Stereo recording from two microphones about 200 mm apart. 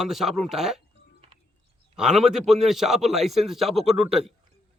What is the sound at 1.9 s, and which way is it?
A man's voice, 5° right (ahead or behind).